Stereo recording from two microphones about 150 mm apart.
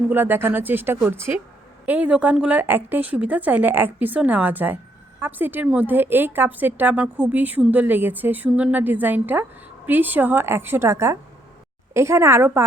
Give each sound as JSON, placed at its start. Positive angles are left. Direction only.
{"t": 0.1, "sound": "a woman's voice", "side_deg": -15}